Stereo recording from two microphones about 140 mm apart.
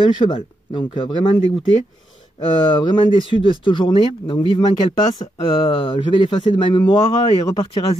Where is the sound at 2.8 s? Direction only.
35° left (ahead or behind).